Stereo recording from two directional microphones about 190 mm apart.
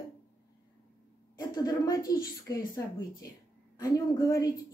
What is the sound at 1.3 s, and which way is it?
A woman's voice, 20° left (ahead or behind).